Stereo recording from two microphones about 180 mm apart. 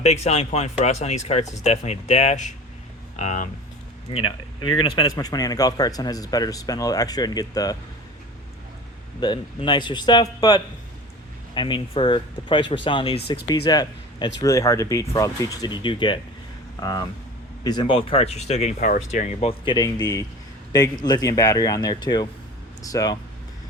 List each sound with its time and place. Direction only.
0.0 s speech: 35° left (ahead or behind)
4.1 s speech: 25° left (ahead or behind)
9.2 s speech: 25° left (ahead or behind)